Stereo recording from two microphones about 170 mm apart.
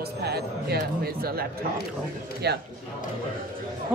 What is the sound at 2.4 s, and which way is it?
Speech, 75° right (ahead or behind).